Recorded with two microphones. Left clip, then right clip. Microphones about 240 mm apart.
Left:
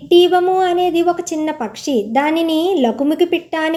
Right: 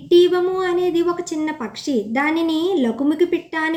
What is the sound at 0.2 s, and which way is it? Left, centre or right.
A woman's voice, left.